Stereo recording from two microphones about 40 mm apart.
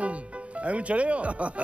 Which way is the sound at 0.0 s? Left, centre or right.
Right.